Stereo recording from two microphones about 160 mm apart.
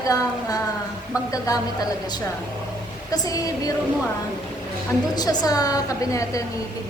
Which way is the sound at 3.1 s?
25° left (ahead or behind).